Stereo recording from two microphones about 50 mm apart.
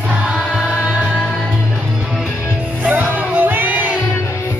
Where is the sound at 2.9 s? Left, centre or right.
Right.